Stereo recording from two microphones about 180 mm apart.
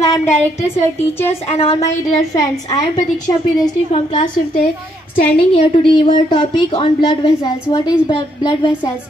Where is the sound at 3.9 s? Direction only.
30° left (ahead or behind).